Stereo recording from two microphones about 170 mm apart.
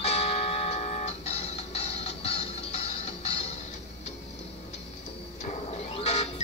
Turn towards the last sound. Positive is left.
turn(degrees=35)  # may be behind; listen again after turning